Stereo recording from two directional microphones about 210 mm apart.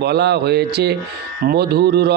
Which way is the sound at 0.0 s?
50° right (ahead or behind).